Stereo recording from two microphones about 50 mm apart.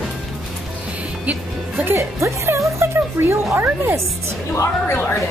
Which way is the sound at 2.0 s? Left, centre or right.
Right.